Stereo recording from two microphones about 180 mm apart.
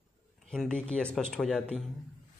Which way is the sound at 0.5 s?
5° left (ahead or behind).